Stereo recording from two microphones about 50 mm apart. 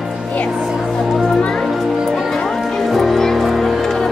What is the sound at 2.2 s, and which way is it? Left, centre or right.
Music, centre.